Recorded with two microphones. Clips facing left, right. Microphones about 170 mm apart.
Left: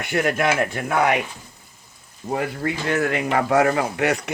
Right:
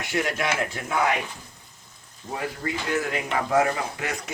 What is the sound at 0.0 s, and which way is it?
Speech, 55° left (ahead or behind).